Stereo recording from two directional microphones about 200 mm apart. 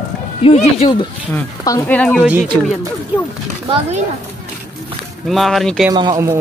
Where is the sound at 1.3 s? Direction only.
15° left (ahead or behind).